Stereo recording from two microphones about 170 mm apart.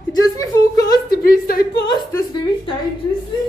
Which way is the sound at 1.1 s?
60° left (ahead or behind).